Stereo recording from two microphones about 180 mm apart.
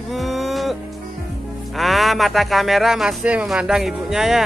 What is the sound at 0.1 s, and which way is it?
Music, centre (ahead or behind).